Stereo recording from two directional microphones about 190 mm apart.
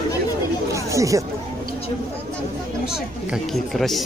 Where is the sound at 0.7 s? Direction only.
15° right (ahead or behind).